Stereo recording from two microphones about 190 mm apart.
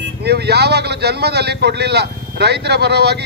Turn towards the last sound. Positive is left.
turn(degrees=-60)  # may be behind; listen again after turning